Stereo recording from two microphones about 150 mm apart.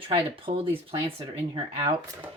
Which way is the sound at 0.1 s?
40° right (ahead or behind).